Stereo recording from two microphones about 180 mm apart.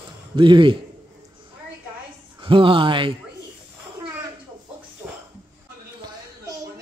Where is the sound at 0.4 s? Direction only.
25° right (ahead or behind).